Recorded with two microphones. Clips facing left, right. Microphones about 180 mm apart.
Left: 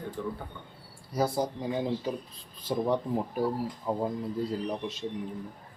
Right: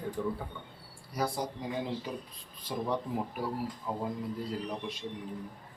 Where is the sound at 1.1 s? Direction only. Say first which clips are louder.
Left 5 dB; 25° left (ahead or behind).